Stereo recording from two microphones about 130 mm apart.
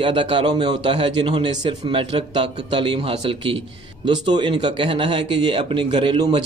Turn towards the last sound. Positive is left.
turn(degrees=-40)  # may be behind; listen again after turning